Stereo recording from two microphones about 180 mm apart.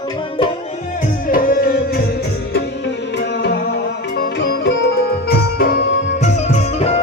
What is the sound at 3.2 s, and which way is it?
Music, 70° left (ahead or behind).